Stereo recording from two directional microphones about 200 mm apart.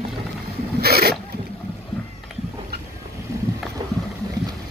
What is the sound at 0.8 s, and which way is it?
Boat, 50° right (ahead or behind).